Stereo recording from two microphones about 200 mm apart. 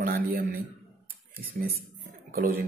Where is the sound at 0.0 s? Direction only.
45° right (ahead or behind).